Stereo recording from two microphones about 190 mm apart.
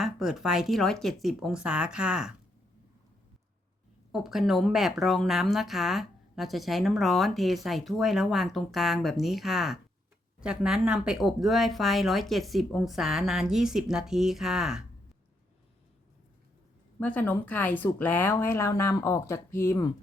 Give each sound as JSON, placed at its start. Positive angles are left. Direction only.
{"t": 0.0, "sound": "a woman's voice", "side_deg": 0}
{"t": 4.1, "sound": "a woman's voice", "side_deg": 0}
{"t": 17.0, "sound": "speech", "side_deg": 10}